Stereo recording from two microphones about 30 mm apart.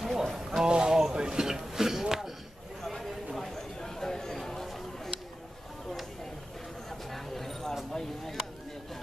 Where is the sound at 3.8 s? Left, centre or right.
Centre.